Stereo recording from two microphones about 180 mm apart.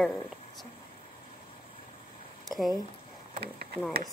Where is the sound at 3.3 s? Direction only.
60° right (ahead or behind).